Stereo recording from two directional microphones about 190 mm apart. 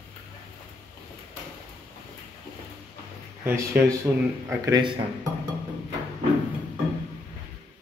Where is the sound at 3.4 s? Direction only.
15° right (ahead or behind).